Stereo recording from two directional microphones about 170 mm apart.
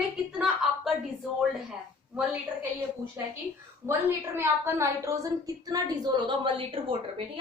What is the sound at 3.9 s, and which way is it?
A woman's voice, 15° right (ahead or behind).